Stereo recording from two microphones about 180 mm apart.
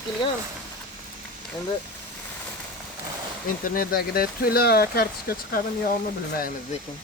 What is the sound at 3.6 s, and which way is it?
Speech, 55° left (ahead or behind).